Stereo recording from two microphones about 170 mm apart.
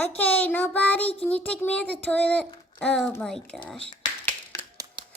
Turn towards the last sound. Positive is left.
turn(degrees=20)  # may be behind; listen again after turning